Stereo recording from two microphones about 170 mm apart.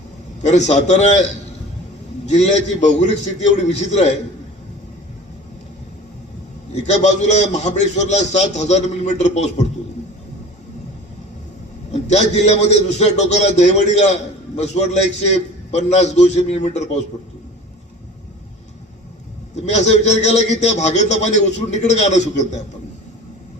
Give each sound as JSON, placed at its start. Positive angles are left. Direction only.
{"t": 0.4, "sound": "a man's voice", "side_deg": 45}
{"t": 2.2, "sound": "a man's voice", "side_deg": 40}
{"t": 6.7, "sound": "a man's voice", "side_deg": 40}
{"t": 11.9, "sound": "a man's voice", "side_deg": 40}
{"t": 19.5, "sound": "a man's voice", "side_deg": 45}